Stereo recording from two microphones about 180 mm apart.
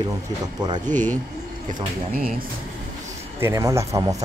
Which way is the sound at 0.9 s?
10° left (ahead or behind).